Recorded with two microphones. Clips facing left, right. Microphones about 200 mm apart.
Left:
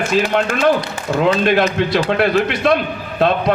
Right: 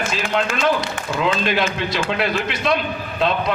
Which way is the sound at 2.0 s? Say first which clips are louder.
Left 6 dB; 55° left (ahead or behind).